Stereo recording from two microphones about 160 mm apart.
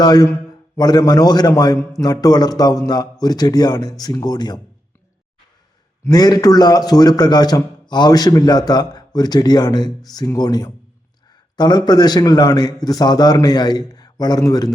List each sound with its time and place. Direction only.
0.0 s a man's voice: 25° left (ahead or behind)
6.1 s a man's voice: 25° left (ahead or behind)